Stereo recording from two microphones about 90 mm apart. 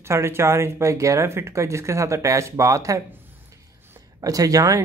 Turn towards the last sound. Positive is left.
turn(degrees=-40)  # may be behind; listen again after turning